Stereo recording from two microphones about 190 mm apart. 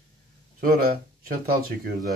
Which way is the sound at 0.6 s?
50° right (ahead or behind).